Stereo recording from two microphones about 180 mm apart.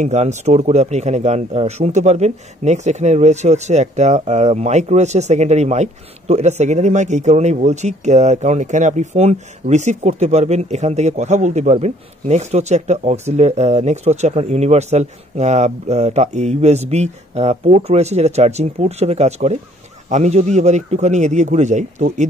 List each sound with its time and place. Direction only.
0.0 s speech: 40° right (ahead or behind)